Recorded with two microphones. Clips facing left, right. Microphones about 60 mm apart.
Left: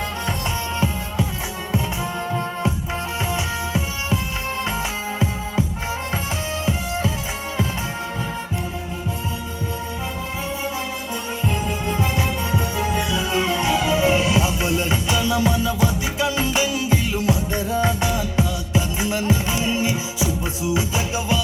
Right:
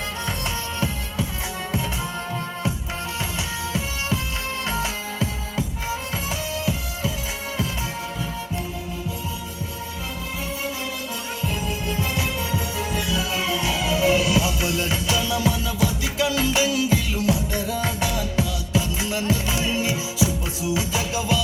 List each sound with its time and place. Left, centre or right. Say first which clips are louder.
3.3 s music: left 3 dB; left
11.4 s music: left 3 dB; left